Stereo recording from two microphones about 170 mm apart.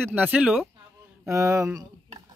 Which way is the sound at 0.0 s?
10° right (ahead or behind).